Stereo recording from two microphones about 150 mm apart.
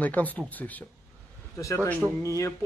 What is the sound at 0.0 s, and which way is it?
Speech, 10° left (ahead or behind).